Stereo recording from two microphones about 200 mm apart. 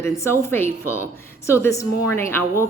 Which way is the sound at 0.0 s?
15° left (ahead or behind).